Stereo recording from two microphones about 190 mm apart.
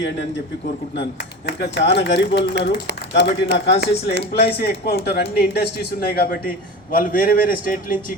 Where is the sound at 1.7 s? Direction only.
65° left (ahead or behind).